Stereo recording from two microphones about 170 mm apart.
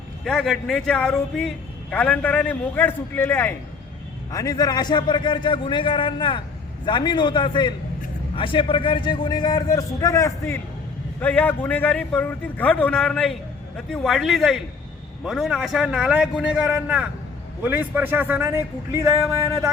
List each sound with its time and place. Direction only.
0.3 s a man's voice: 5° left (ahead or behind); by 19.7 s 15° right (ahead or behind)